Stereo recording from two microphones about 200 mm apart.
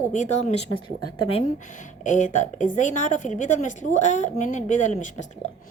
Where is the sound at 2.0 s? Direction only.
40° left (ahead or behind).